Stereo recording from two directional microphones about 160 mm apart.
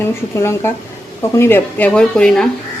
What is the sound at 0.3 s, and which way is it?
Speech, 15° left (ahead or behind).